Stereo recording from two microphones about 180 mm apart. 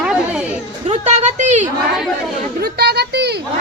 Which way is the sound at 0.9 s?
40° right (ahead or behind).